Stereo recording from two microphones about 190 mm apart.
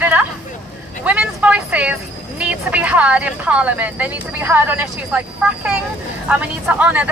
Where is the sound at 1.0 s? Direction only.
5° right (ahead or behind).